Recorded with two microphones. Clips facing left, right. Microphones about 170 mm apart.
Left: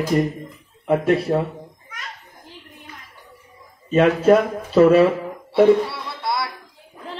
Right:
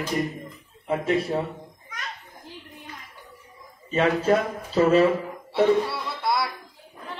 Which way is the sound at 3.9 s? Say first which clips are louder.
Left 7 dB; 65° left (ahead or behind).